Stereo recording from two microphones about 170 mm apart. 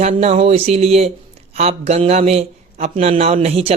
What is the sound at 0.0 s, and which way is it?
A man's voice, 40° right (ahead or behind).